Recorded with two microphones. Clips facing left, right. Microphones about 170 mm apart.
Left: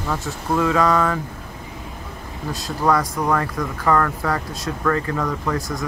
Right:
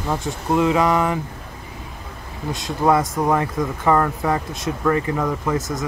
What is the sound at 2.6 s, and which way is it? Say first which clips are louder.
Speech: right 2 dB; 20° right (ahead or behind).